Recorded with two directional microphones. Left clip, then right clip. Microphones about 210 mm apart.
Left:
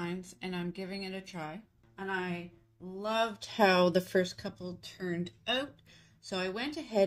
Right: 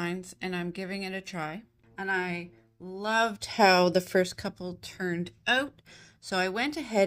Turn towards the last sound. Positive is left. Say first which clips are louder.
# right 4 dB
turn(degrees=-30)  # may be behind; listen again after turning